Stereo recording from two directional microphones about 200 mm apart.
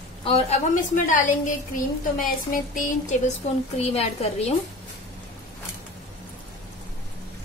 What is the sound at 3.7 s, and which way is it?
Speech, 30° left (ahead or behind).